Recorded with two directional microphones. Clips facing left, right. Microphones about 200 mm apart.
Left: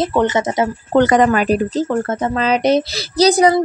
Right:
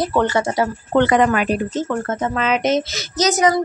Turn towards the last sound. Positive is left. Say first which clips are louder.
# left 5 dB
turn(degrees=35)  # may be behind; listen again after turning